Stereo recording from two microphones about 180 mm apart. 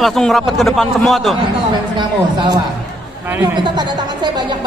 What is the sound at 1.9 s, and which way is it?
Speech, 25° right (ahead or behind).